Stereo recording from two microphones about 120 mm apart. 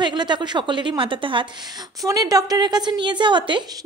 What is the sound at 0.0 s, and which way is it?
A woman's voice, 40° right (ahead or behind).